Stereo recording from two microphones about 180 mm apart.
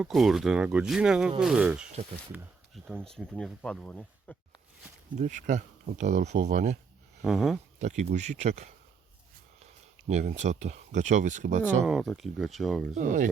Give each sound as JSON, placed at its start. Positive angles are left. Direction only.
{"t": 0.0, "sound": "speech", "side_deg": 0}
{"t": 3.2, "sound": "speech", "side_deg": 5}
{"t": 5.1, "sound": "speech", "side_deg": -40}
{"t": 7.3, "sound": "speech", "side_deg": 0}
{"t": 7.8, "sound": "speech", "side_deg": -40}
{"t": 10.1, "sound": "speech", "side_deg": -40}
{"t": 11.9, "sound": "speech", "side_deg": 0}
{"t": 12.9, "sound": "speech", "side_deg": -45}